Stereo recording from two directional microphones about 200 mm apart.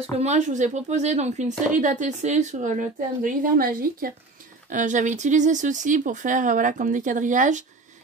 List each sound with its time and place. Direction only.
0.2 s speech: 35° right (ahead or behind)